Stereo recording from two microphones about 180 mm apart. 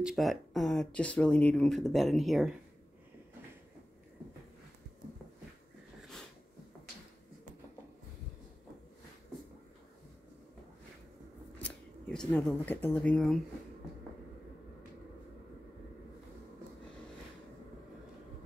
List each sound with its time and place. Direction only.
0.0 s speech: centre (ahead or behind)
11.6 s speech: 5° left (ahead or behind)